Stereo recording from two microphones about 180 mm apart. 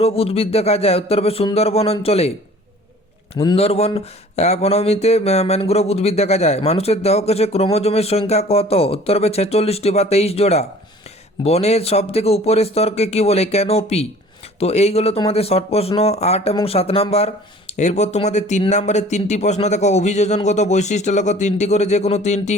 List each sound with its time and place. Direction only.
0.0 s speech: 35° left (ahead or behind)
3.3 s speech: 25° left (ahead or behind)